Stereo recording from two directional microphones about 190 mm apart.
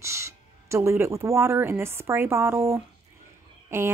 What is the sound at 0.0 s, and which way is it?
A woman's voice, 15° right (ahead or behind).